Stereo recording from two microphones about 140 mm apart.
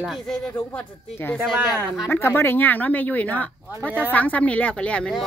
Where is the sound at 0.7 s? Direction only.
15° left (ahead or behind).